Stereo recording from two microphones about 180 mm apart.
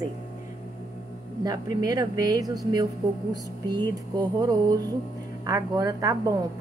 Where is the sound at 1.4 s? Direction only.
20° right (ahead or behind).